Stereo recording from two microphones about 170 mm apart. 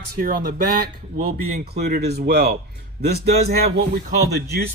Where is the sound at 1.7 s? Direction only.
70° right (ahead or behind).